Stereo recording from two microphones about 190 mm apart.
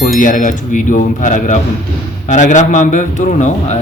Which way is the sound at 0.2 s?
45° left (ahead or behind).